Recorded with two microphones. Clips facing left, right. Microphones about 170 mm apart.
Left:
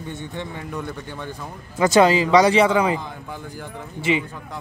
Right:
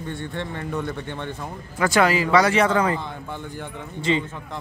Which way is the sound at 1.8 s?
20° left (ahead or behind).